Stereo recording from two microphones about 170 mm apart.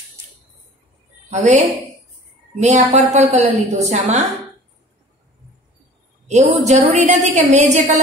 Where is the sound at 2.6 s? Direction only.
45° right (ahead or behind).